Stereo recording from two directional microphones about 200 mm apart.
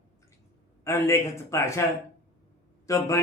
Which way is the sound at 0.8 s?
15° left (ahead or behind).